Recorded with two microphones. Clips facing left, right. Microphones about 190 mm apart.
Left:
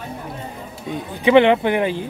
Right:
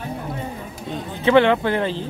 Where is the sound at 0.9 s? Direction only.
15° left (ahead or behind).